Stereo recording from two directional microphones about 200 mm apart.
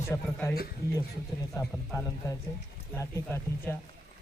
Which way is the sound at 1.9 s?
15° left (ahead or behind).